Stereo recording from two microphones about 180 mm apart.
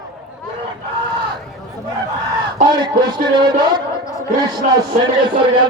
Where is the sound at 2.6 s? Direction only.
25° right (ahead or behind).